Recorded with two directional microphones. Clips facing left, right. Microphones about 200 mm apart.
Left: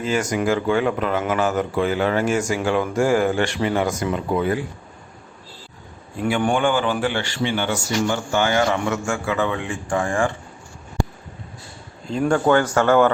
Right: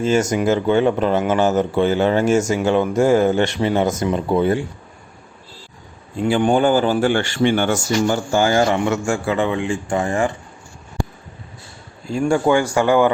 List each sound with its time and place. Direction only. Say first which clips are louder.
0.0 s speech: right 4 dB; 25° right (ahead or behind)
6.2 s speech: right 4 dB; 30° right (ahead or behind)
12.3 s a man's voice: right 1 dB; 10° right (ahead or behind)